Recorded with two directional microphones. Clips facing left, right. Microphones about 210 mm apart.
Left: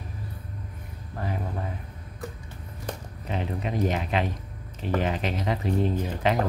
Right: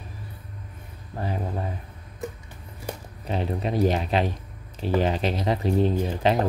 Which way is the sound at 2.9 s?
10° right (ahead or behind).